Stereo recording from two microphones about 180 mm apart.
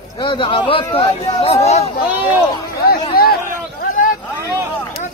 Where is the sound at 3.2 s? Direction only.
55° left (ahead or behind).